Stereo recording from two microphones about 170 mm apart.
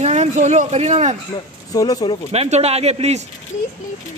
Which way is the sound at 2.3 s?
40° right (ahead or behind).